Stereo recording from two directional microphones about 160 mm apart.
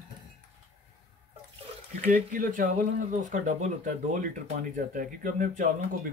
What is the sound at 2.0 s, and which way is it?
Speech, 60° right (ahead or behind).